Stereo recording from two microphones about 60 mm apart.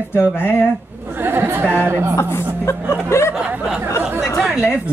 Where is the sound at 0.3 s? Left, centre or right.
Left.